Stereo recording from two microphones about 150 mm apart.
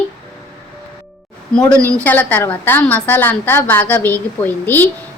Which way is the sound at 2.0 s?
10° left (ahead or behind).